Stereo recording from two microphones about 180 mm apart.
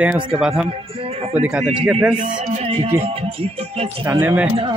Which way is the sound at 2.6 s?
30° right (ahead or behind).